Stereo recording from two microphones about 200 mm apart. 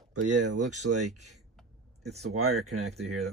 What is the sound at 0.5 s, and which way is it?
Speech, 35° right (ahead or behind).